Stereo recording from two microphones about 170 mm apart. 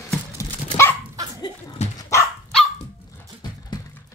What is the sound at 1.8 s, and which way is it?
Dog, 40° left (ahead or behind).